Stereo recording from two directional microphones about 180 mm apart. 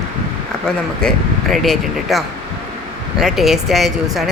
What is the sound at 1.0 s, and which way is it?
Speech, centre (ahead or behind).